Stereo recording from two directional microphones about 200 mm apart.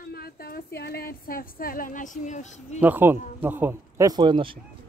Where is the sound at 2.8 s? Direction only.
10° right (ahead or behind).